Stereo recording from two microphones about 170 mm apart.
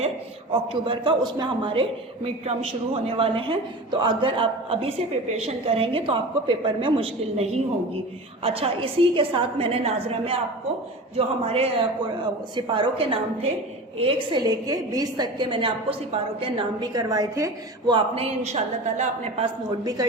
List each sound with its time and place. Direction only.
0.5 s a man's voice: 30° right (ahead or behind)
19.8 s a woman's voice: 20° right (ahead or behind)